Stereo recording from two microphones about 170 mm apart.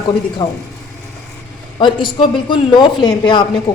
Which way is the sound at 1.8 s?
30° left (ahead or behind).